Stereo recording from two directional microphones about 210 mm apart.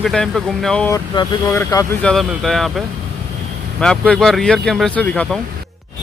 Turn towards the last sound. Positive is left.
turn(degrees=5)  # may be behind; listen again after turning